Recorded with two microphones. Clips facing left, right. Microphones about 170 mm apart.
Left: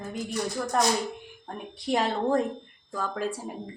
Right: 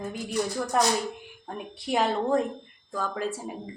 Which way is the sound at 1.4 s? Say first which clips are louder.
Left 1 dB; 5° right (ahead or behind).